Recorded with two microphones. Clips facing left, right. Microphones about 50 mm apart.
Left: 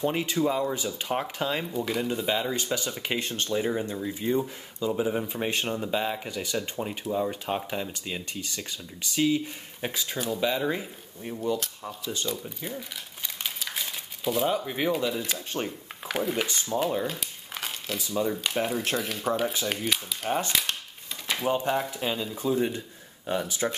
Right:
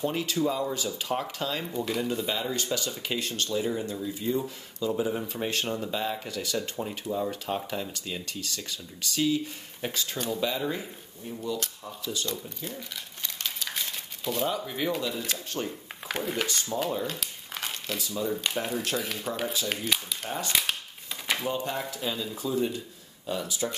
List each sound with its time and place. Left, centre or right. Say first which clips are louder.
0.0 s speech: left 2 dB; left
1.7 s speech: left 1 dB; centre
2.5 s speech: left 1 dB; left
4.4 s speech: left 2 dB; centre
12.3 s speech: left 2 dB; centre
13.4 s crumpling: even; centre
14.9 s speech: left 4 dB; centre
15.3 s speech: left 2 dB; left
16.1 s speech: left 2 dB; centre
16.7 s speech: left 4 dB; centre
17.9 s speech: left 4 dB; centre
18.3 s speech: left 2 dB; centre
20.2 s speech: left 8 dB; left
21.5 s speech: left 5 dB; left